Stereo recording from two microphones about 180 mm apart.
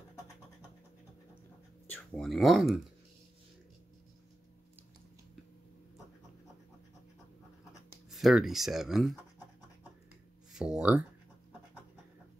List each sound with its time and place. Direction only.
1.9 s speech: 5° left (ahead or behind)
8.1 s speech: centre (ahead or behind)
10.5 s speech: 5° right (ahead or behind)